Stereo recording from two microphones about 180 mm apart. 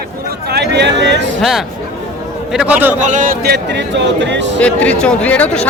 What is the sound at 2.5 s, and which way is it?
Speech, 10° right (ahead or behind).